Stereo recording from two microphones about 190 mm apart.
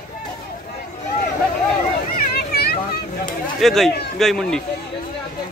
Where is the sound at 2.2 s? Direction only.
55° left (ahead or behind).